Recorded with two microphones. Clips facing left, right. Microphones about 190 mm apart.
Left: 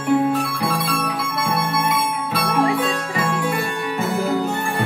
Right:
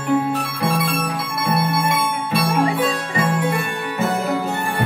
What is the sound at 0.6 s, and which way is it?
Music, 20° right (ahead or behind).